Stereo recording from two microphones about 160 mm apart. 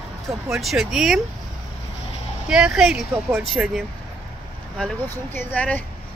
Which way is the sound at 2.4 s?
5° right (ahead or behind).